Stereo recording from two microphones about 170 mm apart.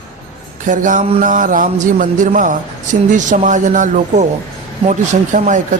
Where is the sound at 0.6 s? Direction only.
50° right (ahead or behind).